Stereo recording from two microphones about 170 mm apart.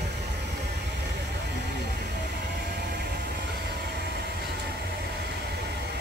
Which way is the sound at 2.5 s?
70° right (ahead or behind).